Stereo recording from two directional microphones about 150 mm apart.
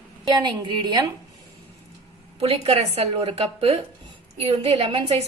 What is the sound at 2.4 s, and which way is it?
A woman's voice, 40° right (ahead or behind).